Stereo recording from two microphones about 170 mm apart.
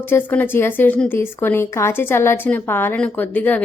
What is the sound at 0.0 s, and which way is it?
Speech, 10° left (ahead or behind).